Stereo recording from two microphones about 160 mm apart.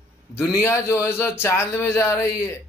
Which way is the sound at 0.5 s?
15° left (ahead or behind).